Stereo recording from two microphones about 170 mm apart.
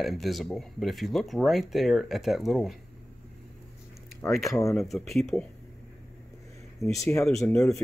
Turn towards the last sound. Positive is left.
turn(degrees=5)  # may be behind; listen again after turning